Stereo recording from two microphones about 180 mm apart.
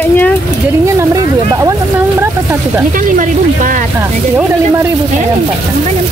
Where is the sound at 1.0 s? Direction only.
15° right (ahead or behind).